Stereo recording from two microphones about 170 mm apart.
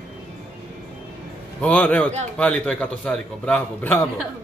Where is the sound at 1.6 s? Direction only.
10° left (ahead or behind).